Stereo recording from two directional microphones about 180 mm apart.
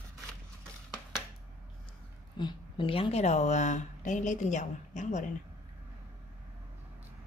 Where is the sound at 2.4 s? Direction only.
25° left (ahead or behind); by 5.3 s 45° left (ahead or behind).